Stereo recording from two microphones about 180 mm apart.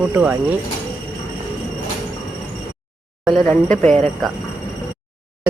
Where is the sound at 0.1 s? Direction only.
10° right (ahead or behind).